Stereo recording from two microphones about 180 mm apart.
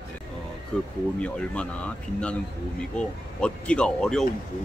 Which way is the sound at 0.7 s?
5° left (ahead or behind).